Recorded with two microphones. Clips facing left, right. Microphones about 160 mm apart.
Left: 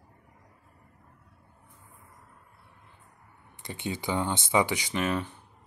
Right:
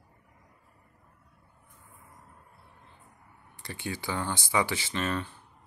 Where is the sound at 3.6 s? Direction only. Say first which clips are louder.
Left 2 dB; 20° left (ahead or behind).